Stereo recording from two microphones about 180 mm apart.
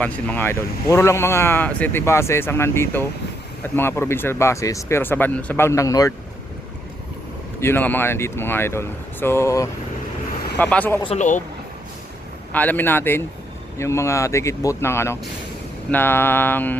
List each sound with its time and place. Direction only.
0.0 s speech: 10° left (ahead or behind)
7.6 s speech: 10° left (ahead or behind)
11.0 s speech: 40° left (ahead or behind)
12.5 s speech: 10° left (ahead or behind)